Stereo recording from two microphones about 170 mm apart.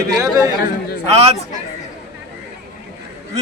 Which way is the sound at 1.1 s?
35° right (ahead or behind).